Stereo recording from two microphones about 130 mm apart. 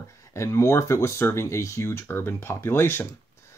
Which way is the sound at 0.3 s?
20° left (ahead or behind).